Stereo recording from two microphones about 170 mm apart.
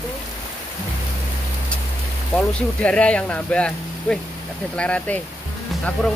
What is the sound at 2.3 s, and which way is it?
Speech, 5° left (ahead or behind).